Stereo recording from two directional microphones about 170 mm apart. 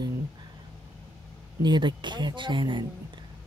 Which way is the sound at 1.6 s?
25° right (ahead or behind).